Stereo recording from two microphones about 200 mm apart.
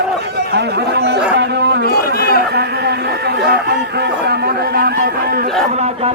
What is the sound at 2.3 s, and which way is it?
Chatter, 55° right (ahead or behind).